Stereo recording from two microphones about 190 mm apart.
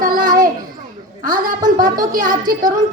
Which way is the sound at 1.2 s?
45° right (ahead or behind).